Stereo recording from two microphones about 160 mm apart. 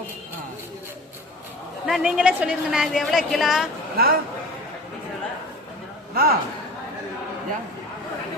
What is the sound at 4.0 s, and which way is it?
Speech, 70° right (ahead or behind).